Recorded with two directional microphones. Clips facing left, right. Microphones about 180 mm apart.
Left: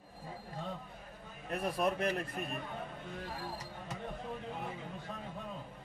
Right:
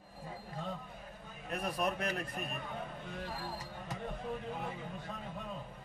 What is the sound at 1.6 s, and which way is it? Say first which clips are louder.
Speech: left 3 dB; 25° left (ahead or behind).